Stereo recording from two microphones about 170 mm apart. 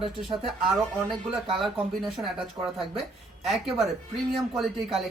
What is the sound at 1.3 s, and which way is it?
Speech, centre (ahead or behind).